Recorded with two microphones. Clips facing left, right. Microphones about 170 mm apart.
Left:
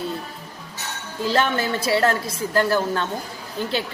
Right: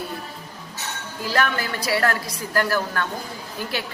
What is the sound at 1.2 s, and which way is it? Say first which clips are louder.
A woman's voice: left 3 dB; 25° left (ahead or behind).